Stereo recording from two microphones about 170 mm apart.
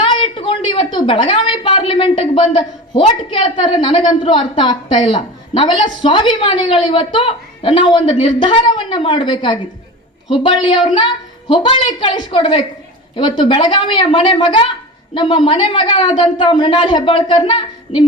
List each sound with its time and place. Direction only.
0.1 s a woman's voice: 30° left (ahead or behind)